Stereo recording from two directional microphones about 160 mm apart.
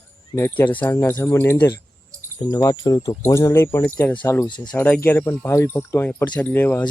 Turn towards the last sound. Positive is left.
turn(degrees=10)  # may be behind; listen again after turning